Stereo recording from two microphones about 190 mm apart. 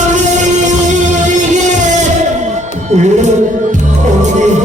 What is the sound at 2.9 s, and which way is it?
Music, 40° right (ahead or behind).